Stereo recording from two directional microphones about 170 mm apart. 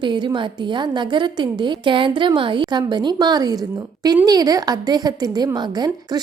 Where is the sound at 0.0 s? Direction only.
30° right (ahead or behind).